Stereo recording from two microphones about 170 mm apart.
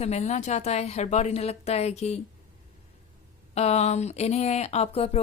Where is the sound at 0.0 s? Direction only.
40° left (ahead or behind).